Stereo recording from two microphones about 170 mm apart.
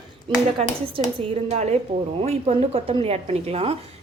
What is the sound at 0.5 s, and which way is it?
A woman's voice, 35° right (ahead or behind).